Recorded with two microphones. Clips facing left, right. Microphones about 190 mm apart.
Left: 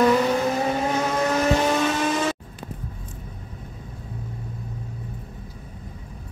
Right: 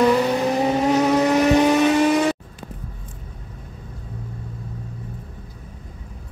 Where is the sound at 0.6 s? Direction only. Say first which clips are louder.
Right 5 dB; 15° right (ahead or behind).